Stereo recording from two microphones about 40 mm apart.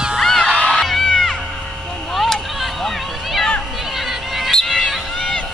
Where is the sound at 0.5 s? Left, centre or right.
Left.